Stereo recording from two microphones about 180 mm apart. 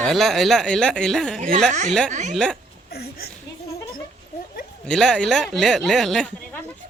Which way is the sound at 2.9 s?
60° left (ahead or behind).